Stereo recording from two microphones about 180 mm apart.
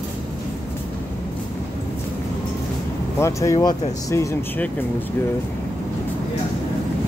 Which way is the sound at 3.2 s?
15° left (ahead or behind).